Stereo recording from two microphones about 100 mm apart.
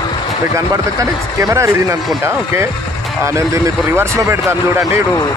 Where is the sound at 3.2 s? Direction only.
30° right (ahead or behind).